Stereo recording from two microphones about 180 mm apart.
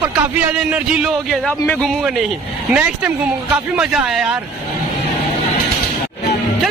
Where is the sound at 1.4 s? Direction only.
5° left (ahead or behind).